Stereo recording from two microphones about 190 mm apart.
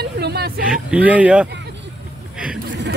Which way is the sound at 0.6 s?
5° right (ahead or behind).